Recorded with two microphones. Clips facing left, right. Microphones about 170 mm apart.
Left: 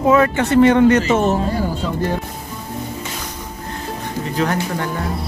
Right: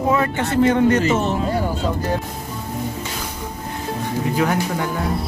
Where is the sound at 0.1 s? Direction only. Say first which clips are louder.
Left 7 dB; 85° left.